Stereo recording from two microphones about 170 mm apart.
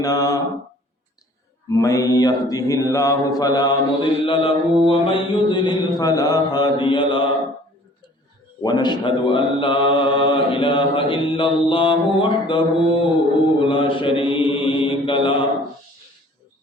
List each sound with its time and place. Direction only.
0.0 s mantra: 20° left (ahead or behind)
1.7 s mantra: 20° left (ahead or behind)
8.6 s mantra: 25° left (ahead or behind)